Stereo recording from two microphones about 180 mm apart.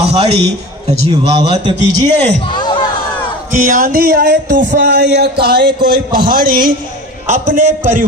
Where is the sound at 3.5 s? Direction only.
45° right (ahead or behind); by 5.8 s 65° right (ahead or behind).